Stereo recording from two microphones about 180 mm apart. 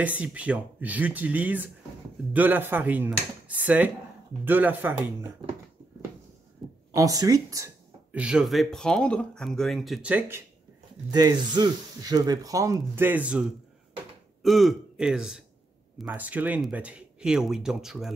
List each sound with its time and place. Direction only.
0.0 s speech: 10° right (ahead or behind)
6.9 s a sound: 20° right (ahead or behind)
8.2 s speech: 5° right (ahead or behind)
11.1 s speech: 20° right (ahead or behind); by 18.1 s centre (ahead or behind)